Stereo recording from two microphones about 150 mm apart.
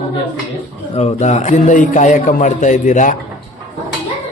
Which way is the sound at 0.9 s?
50° left (ahead or behind).